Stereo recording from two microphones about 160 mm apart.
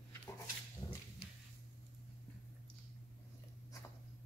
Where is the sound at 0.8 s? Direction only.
30° left (ahead or behind).